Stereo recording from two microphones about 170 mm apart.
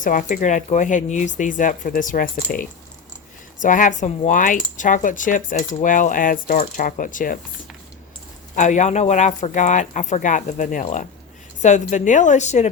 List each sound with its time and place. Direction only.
0.0 s speech: 50° left (ahead or behind)
8.5 s speech: 45° left (ahead or behind)